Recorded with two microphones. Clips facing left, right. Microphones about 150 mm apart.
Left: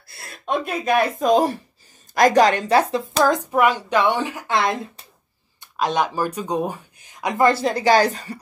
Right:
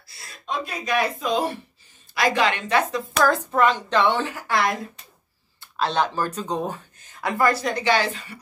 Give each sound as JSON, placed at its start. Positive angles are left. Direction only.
{"t": 0.1, "sound": "a woman's voice", "side_deg": 55}
{"t": 3.1, "sound": "speech", "side_deg": 20}